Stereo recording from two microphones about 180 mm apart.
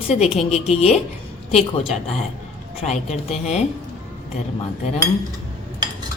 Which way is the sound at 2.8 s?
40° left (ahead or behind).